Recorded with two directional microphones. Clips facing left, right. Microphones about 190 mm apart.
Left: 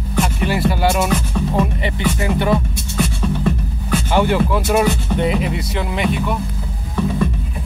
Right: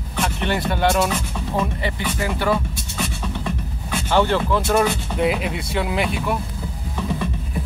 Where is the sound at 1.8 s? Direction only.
20° left (ahead or behind).